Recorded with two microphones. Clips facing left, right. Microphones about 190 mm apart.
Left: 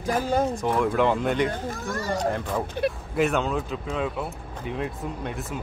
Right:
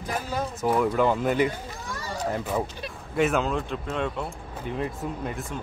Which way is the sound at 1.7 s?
50° left (ahead or behind).